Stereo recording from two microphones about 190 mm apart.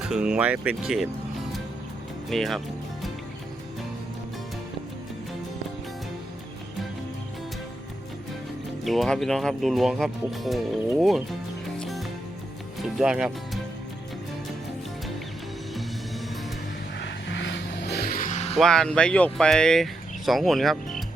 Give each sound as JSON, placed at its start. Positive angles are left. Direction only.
{"t": 0.1, "sound": "speech", "side_deg": -5}
{"t": 2.3, "sound": "speech", "side_deg": 0}
{"t": 8.8, "sound": "speech", "side_deg": 0}
{"t": 11.8, "sound": "music", "side_deg": 0}
{"t": 12.8, "sound": "speech", "side_deg": -5}
{"t": 17.0, "sound": "vehicle", "side_deg": 65}
{"t": 18.5, "sound": "speech", "side_deg": 0}